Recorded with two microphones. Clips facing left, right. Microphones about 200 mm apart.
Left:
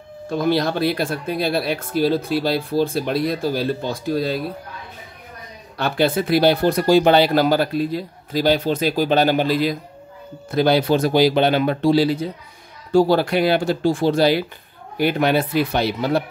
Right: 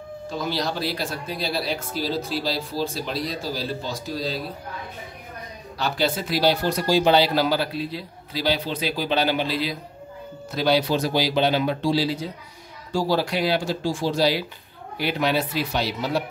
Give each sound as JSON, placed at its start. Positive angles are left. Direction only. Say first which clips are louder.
{"t": 0.3, "sound": "speech", "louder": "left 8 dB", "side_deg": 55}
{"t": 5.8, "sound": "speech", "louder": "left 5 dB", "side_deg": 55}